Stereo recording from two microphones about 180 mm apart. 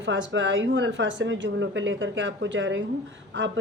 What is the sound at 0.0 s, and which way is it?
Speech, 90° right.